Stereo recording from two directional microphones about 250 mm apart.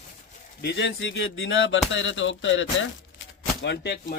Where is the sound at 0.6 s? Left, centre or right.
Left.